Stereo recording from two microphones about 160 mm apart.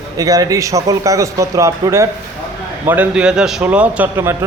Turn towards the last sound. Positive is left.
turn(degrees=-15)  # may be behind; listen again after turning